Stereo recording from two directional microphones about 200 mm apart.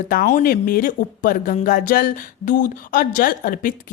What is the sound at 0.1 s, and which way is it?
Speech, 45° left (ahead or behind).